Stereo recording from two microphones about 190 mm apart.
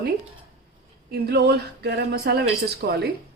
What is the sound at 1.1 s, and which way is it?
A woman's voice, 60° right (ahead or behind).